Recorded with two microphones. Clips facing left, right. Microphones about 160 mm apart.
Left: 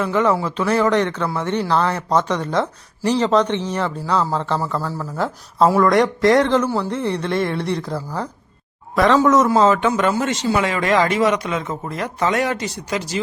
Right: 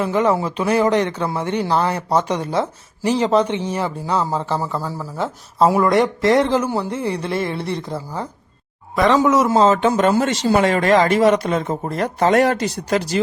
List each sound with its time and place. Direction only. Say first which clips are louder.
0.3 s speech: right 1 dB; 15° right (ahead or behind)
5.1 s speech: left 1 dB; centre (ahead or behind)
5.6 s speech: even; 15° right (ahead or behind)
5.9 s speech: left 1 dB; centre (ahead or behind)
9.1 s speech: left 1 dB; 10° right (ahead or behind)
9.5 s speech: right 1 dB; 30° right (ahead or behind); by 13.0 s 50° right (ahead or behind)